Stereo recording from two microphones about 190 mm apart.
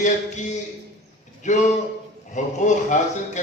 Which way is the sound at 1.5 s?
40° left (ahead or behind).